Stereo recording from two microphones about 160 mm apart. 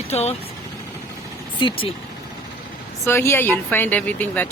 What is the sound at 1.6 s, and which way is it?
Speech, 30° left (ahead or behind).